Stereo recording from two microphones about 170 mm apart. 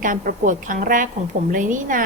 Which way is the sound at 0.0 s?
50° right (ahead or behind).